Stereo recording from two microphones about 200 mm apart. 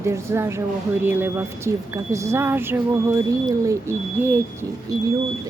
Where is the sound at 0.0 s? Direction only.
15° right (ahead or behind).